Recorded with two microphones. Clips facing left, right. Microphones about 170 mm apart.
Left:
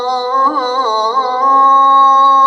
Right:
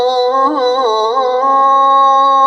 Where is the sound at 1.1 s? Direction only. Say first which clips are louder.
Right 2 dB; 60° right (ahead or behind).